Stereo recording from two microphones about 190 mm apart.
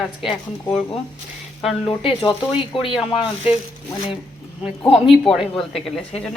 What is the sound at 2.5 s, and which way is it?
Speech, 30° left (ahead or behind).